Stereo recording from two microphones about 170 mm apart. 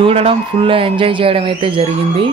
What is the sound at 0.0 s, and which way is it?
A woman's voice, 35° right (ahead or behind).